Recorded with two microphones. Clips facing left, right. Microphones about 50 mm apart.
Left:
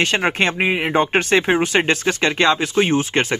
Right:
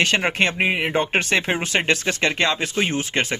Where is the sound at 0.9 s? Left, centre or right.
Left.